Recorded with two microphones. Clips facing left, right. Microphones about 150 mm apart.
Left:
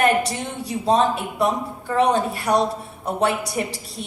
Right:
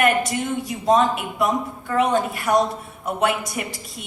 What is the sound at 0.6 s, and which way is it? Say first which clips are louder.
A woman's voice: left 1 dB; 30° left (ahead or behind).